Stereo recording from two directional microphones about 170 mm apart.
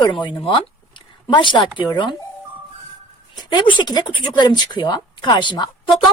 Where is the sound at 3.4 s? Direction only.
25° left (ahead or behind).